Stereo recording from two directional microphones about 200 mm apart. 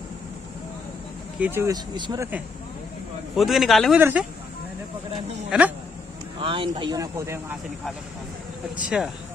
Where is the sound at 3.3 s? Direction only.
Centre (ahead or behind).